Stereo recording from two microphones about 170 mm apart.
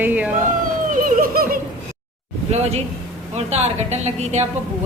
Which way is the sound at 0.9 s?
50° right (ahead or behind).